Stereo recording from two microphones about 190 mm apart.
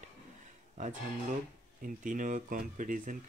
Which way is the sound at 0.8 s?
40° right (ahead or behind).